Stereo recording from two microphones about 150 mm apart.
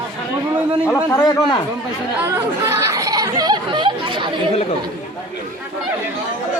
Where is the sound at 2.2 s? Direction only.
20° right (ahead or behind).